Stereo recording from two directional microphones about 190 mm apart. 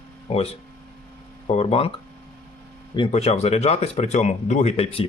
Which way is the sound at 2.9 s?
30° left (ahead or behind).